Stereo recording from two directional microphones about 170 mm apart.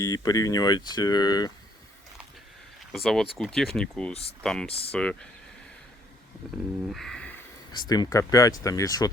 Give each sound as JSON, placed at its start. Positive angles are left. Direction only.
{"t": 0.0, "sound": "speech", "side_deg": 20}
{"t": 2.9, "sound": "speech", "side_deg": 0}
{"t": 6.9, "sound": "a sound", "side_deg": 5}
{"t": 7.7, "sound": "speech", "side_deg": 25}